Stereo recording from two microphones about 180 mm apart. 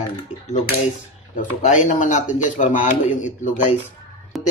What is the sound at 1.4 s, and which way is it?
A man's voice, 45° left (ahead or behind).